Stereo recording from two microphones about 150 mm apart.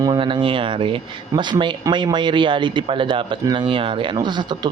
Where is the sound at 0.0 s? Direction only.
30° right (ahead or behind).